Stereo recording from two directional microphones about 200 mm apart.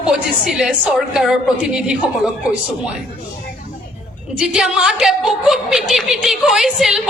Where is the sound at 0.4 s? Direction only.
5° right (ahead or behind).